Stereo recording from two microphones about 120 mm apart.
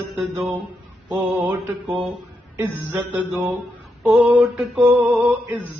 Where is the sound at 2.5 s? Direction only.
20° right (ahead or behind).